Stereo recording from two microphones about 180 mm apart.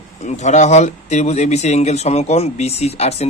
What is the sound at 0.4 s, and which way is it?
A man's voice, 40° left (ahead or behind).